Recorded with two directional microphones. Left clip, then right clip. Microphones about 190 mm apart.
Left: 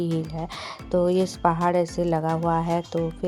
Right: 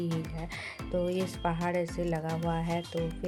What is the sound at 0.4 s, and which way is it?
Speech, 30° left (ahead or behind).